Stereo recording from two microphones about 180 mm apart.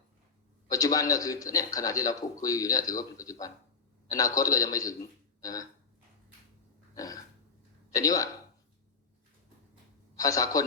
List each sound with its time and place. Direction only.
0.7 s a man's voice: 20° left (ahead or behind)
6.9 s a sound: 20° left (ahead or behind)
7.9 s speech: 20° left (ahead or behind)
10.2 s a man's voice: 20° left (ahead or behind)